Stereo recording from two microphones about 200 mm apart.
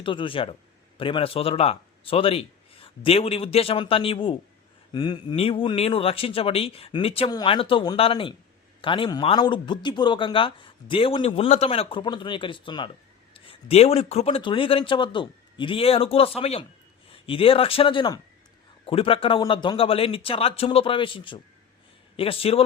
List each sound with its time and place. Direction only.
0.0 s speech: 25° left (ahead or behind)